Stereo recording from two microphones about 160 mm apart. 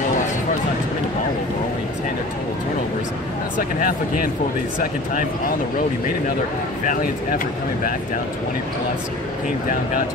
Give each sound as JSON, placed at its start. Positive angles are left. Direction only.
{"t": 3.5, "sound": "speech", "side_deg": 60}
{"t": 6.9, "sound": "speech", "side_deg": 60}